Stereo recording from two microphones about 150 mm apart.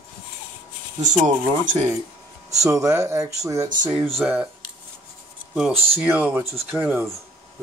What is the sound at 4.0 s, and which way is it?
Speech, centre (ahead or behind).